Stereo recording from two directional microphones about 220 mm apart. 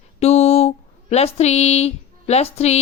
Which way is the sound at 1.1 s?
30° left (ahead or behind).